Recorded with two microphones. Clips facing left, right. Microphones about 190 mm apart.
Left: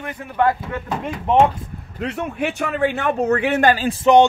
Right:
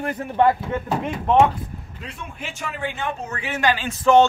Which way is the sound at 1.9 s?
70° left (ahead or behind).